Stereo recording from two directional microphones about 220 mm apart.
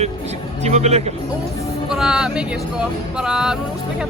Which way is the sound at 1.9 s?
5° right (ahead or behind).